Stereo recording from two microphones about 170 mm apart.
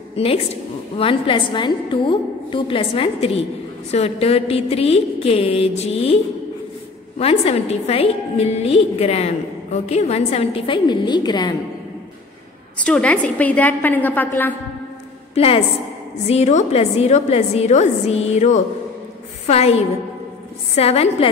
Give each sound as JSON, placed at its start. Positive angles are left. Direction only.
{"t": 0.1, "sound": "a woman's voice", "side_deg": 35}
{"t": 7.2, "sound": "a woman's voice", "side_deg": 35}
{"t": 12.7, "sound": "a woman's voice", "side_deg": 5}
{"t": 15.3, "sound": "a woman's voice", "side_deg": 35}
{"t": 20.7, "sound": "a woman's voice", "side_deg": 35}